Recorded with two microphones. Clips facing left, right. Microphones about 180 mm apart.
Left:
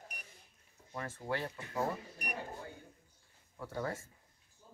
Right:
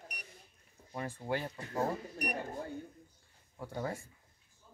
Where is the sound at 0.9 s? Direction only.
15° right (ahead or behind).